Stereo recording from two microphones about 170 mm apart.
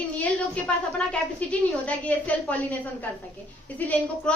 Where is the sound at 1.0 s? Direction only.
5° left (ahead or behind).